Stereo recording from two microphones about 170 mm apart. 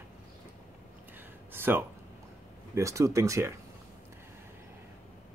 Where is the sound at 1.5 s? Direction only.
15° right (ahead or behind).